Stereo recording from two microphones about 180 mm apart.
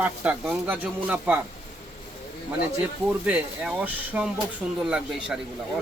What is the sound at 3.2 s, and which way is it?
A man's voice, 5° right (ahead or behind).